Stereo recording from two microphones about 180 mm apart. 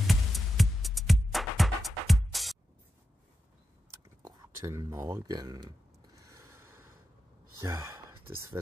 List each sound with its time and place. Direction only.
0.0 s music: centre (ahead or behind)
4.2 s speech: 20° right (ahead or behind)
6.1 s snort: 15° right (ahead or behind)
7.6 s speech: 15° right (ahead or behind)